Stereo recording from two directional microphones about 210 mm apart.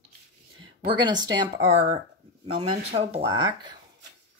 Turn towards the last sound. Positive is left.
turn(degrees=-20)  # may be behind; listen again after turning